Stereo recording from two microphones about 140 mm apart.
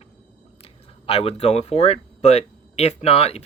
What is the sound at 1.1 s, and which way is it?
Speech, 45° left (ahead or behind).